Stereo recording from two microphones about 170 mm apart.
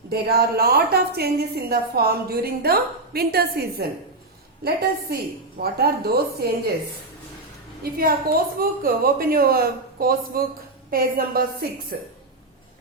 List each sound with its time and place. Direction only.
0.1 s a woman's voice: 65° right (ahead or behind)
7.9 s a woman's voice: 60° right (ahead or behind)